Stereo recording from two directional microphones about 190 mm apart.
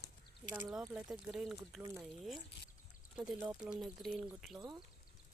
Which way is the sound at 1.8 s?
15° right (ahead or behind).